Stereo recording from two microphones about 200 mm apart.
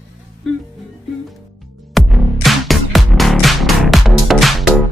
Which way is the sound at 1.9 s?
Centre (ahead or behind).